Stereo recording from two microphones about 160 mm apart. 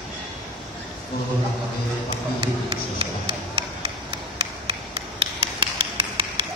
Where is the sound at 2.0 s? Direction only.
35° right (ahead or behind).